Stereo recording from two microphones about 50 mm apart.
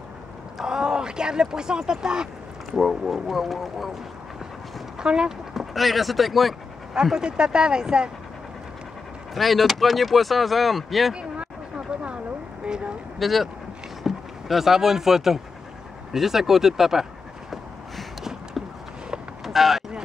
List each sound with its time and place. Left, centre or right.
0.6 s speech: centre
2.7 s speech: centre
4.9 s speech: centre
6.9 s speech: centre
9.3 s speech: centre
11.1 s a sound: right
12.6 s speech: centre
13.2 s speech: centre
17.9 s a sound: centre
19.4 s vehicle: centre